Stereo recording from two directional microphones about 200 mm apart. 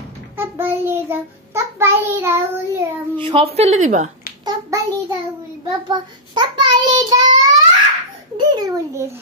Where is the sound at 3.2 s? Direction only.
25° right (ahead or behind).